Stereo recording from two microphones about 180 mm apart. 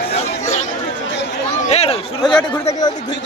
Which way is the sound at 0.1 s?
35° left (ahead or behind).